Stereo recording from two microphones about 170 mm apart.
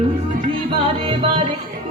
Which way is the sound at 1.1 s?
30° right (ahead or behind).